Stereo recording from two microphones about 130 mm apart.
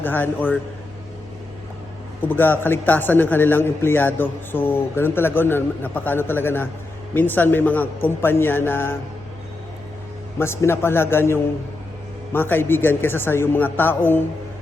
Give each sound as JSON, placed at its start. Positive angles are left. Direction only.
{"t": 0.0, "sound": "a man's voice", "side_deg": 15}
{"t": 2.2, "sound": "a man's voice", "side_deg": 15}
{"t": 10.3, "sound": "a man's voice", "side_deg": 20}